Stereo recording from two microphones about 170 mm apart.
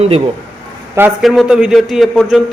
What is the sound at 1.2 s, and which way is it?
Speech, centre (ahead or behind).